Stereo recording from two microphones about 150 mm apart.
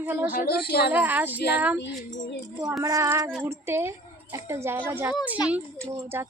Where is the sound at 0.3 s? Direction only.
75° left (ahead or behind); by 0.9 s 90° left.